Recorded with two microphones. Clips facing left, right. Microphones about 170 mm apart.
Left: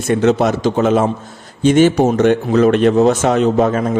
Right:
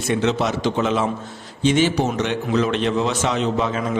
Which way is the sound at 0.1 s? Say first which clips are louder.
Left 7 dB; 50° left (ahead or behind).